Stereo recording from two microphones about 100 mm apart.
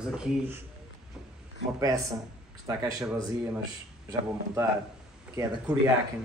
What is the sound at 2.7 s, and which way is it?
Speech, 35° right (ahead or behind).